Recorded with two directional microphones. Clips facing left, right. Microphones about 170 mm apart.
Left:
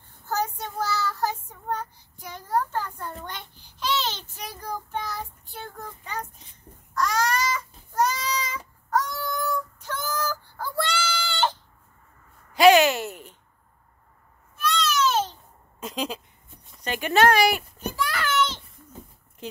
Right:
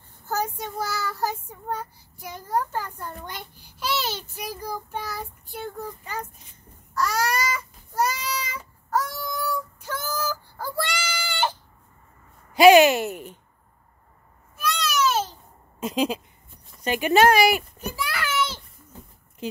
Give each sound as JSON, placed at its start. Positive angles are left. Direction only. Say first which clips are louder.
{"t": 0.3, "sound": "child singing", "louder": "even", "side_deg": -10}
{"t": 3.3, "sound": "a child's voice", "louder": "right 1 dB", "side_deg": -10}
{"t": 6.9, "sound": "a sound", "louder": "even", "side_deg": -5}
{"t": 12.5, "sound": "speech", "louder": "right 3 dB", "side_deg": -15}
{"t": 14.6, "sound": "baby cry", "louder": "even", "side_deg": -10}
{"t": 15.8, "sound": "a sound", "louder": "right 6 dB", "side_deg": -10}